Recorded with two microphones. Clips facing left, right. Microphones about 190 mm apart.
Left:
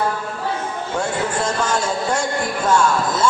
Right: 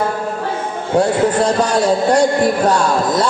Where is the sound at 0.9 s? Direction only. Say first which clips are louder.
Right 9 dB; 35° right (ahead or behind).